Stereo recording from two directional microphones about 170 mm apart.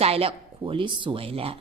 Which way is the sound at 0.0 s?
35° right (ahead or behind).